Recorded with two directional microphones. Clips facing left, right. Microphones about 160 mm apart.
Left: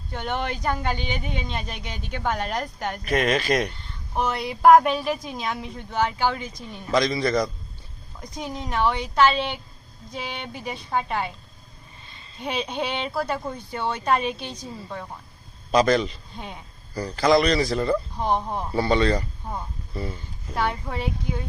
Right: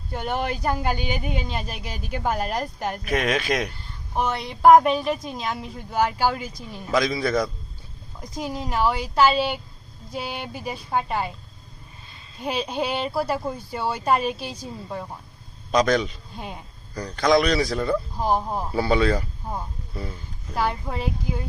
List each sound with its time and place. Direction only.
0.1 s a man's voice: 5° right (ahead or behind)
12.4 s a man's voice: centre (ahead or behind)
15.7 s a man's voice: centre (ahead or behind)